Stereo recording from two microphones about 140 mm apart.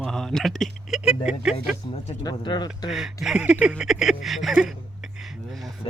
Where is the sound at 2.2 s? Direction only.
30° left (ahead or behind).